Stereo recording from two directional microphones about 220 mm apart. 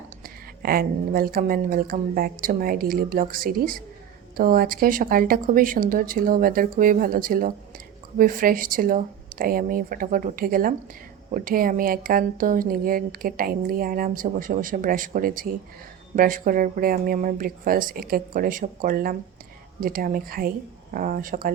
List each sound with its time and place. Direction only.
0.2 s speech: 40° right (ahead or behind)